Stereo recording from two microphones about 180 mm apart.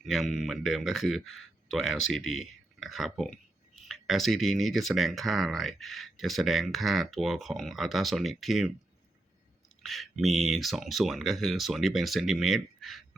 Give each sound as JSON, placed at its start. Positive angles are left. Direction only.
{"t": 0.0, "sound": "speech", "side_deg": 0}
{"t": 9.8, "sound": "speech", "side_deg": 0}